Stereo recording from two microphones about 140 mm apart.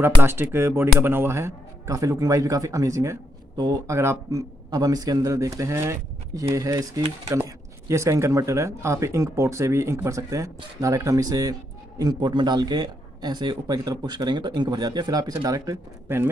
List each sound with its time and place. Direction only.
0.0 s speech: 15° right (ahead or behind)